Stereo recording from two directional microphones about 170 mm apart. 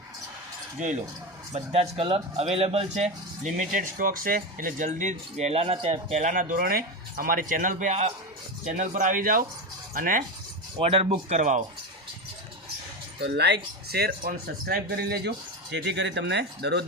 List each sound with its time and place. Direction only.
1.5 s speech: 35° right (ahead or behind); by 10.2 s 55° right (ahead or behind)
10.8 s speech: 35° right (ahead or behind)
13.2 s speech: 85° right
15.7 s speech: 90° right